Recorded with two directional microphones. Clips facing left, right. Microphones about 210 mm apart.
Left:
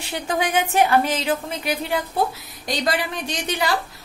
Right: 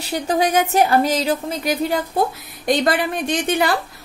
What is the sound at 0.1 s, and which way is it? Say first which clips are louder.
A woman's voice: right 4 dB; 35° right (ahead or behind).